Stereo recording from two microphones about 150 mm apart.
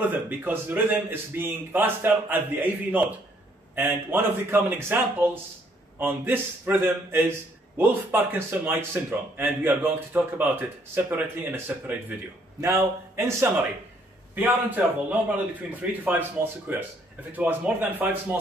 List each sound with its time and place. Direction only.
0.0 s a man's voice: 10° right (ahead or behind)